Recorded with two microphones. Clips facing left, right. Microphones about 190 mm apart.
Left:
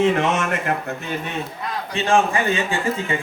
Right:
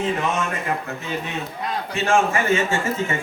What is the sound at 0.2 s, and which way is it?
Speech, 80° left.